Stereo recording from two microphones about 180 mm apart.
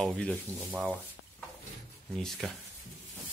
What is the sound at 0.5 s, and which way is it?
Speech, 10° right (ahead or behind).